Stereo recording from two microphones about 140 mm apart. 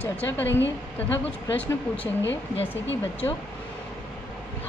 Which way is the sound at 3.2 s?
25° left (ahead or behind).